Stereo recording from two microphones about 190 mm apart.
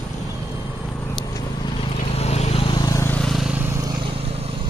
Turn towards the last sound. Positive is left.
turn(degrees=0)  # may be behind; listen again after turning